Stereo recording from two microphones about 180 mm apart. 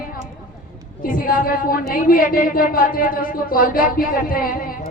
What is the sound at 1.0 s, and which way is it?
A woman's voice, 50° left (ahead or behind).